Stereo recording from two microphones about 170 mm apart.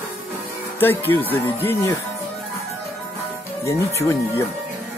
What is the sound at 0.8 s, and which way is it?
Speech, 10° left (ahead or behind).